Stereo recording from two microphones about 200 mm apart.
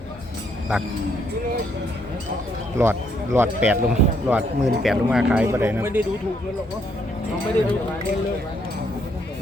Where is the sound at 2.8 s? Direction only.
15° right (ahead or behind).